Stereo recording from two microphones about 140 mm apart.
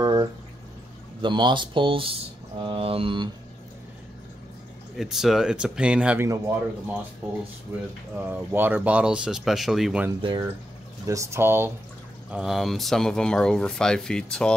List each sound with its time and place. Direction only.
0.0 s a sound: 25° right (ahead or behind)
1.2 s speech: 35° right (ahead or behind)
4.9 s speech: 5° right (ahead or behind)
6.2 s speech: 20° right (ahead or behind); by 10.0 s centre (ahead or behind)
11.1 s speech: 20° right (ahead or behind)
12.3 s speech: 5° right (ahead or behind)